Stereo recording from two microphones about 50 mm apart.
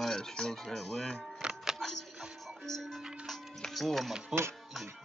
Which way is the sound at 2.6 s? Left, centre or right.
Centre.